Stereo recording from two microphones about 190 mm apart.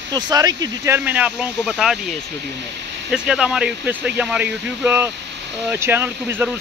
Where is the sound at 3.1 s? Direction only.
5° right (ahead or behind).